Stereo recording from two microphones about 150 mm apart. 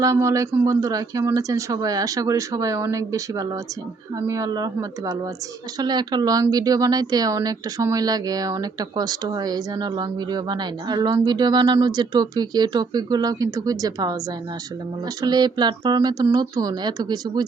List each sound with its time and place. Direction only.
0.0 s speech: 20° right (ahead or behind)
15.2 s speech: 30° right (ahead or behind)